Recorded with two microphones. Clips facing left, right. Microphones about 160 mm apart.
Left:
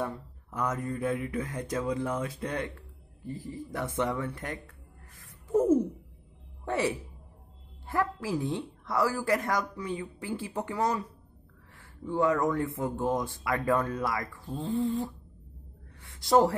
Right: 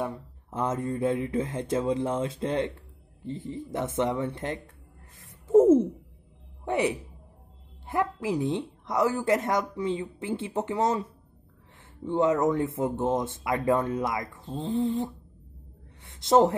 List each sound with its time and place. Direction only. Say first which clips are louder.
0.0 s speech: right 2 dB; 25° right (ahead or behind)
5.2 s a sound: right 8 dB; 25° right (ahead or behind)
6.6 s a woman's voice: right 3 dB; 20° right (ahead or behind)